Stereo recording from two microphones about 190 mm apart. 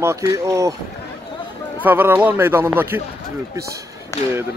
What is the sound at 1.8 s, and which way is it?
Speech, 10° right (ahead or behind).